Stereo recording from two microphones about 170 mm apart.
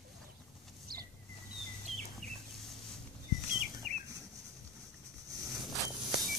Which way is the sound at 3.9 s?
45° right (ahead or behind).